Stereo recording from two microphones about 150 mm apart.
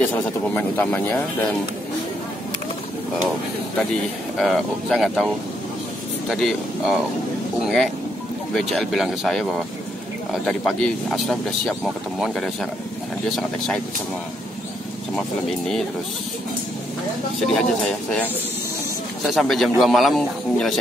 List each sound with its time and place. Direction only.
0.0 s speech: 10° left (ahead or behind)
4.4 s speech: centre (ahead or behind)
17.6 s speech: 5° left (ahead or behind)